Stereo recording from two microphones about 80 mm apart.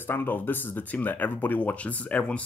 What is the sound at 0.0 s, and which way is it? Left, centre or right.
Speech, left.